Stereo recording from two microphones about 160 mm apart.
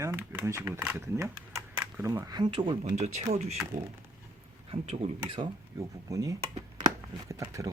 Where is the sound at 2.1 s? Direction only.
25° right (ahead or behind).